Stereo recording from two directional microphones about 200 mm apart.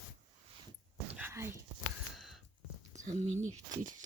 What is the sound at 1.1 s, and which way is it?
Whispering, 10° right (ahead or behind).